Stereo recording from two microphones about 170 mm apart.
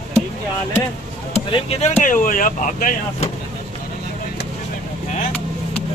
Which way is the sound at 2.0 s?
50° left (ahead or behind).